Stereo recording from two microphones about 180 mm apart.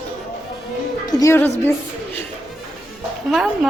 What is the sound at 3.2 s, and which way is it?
Speech, centre (ahead or behind).